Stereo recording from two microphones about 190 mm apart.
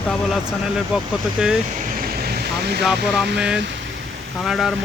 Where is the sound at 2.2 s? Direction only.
55° right (ahead or behind).